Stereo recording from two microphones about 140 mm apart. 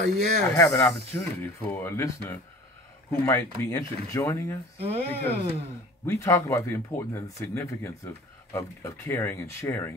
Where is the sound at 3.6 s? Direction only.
20° left (ahead or behind).